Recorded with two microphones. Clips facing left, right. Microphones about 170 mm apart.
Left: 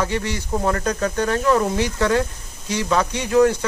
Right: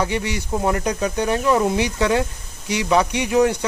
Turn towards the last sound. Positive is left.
turn(degrees=-15)  # may be behind; listen again after turning